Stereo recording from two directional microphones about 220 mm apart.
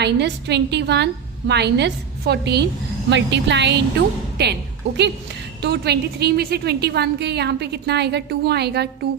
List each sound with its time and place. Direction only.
0.0 s a woman's voice: 50° right (ahead or behind)
5.6 s a woman's voice: 50° right (ahead or behind)